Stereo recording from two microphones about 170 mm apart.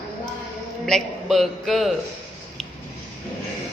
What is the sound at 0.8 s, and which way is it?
A man's voice, centre (ahead or behind).